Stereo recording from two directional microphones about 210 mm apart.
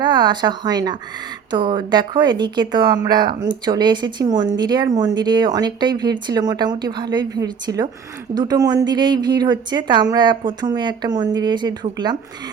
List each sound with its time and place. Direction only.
0.0 s speech: 20° right (ahead or behind)